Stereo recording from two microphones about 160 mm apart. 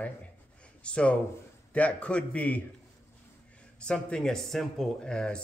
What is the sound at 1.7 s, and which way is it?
A man's voice, 10° left (ahead or behind).